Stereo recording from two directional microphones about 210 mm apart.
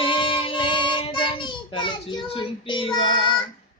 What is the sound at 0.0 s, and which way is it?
Child singing, 25° left (ahead or behind).